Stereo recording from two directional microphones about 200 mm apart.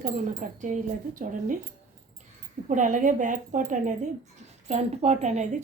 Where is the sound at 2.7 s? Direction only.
40° right (ahead or behind).